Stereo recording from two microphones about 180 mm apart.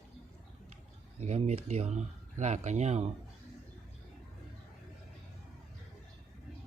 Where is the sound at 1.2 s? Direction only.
35° right (ahead or behind).